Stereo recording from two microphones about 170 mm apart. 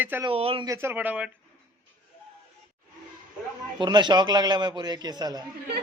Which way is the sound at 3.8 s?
25° right (ahead or behind).